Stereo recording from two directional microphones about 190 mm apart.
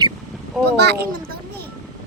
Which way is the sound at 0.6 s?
60° right (ahead or behind).